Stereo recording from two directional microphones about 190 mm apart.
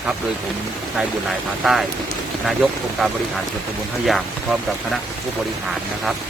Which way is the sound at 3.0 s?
Centre (ahead or behind).